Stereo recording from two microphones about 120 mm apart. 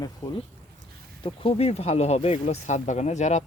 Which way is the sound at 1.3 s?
55° left (ahead or behind).